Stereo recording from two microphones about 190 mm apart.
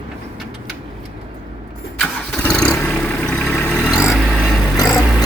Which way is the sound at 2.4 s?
5° left (ahead or behind).